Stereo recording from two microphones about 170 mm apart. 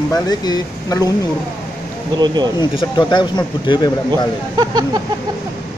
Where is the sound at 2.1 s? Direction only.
25° right (ahead or behind).